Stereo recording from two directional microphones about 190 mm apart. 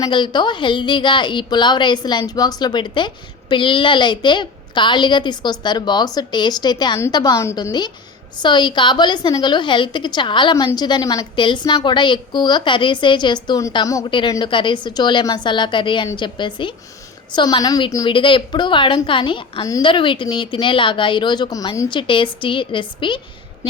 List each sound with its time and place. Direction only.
0.0 s a woman's voice: 25° left (ahead or behind)